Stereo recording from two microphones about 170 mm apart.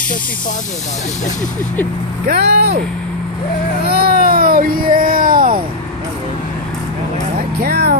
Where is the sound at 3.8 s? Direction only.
65° right (ahead or behind).